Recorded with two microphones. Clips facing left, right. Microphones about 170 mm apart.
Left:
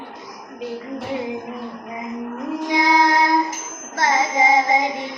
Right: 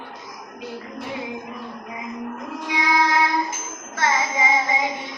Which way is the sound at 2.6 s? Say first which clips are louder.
Left 4 dB; 35° left (ahead or behind).